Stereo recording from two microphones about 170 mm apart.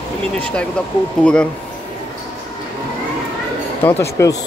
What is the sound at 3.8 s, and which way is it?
Speech, 15° left (ahead or behind).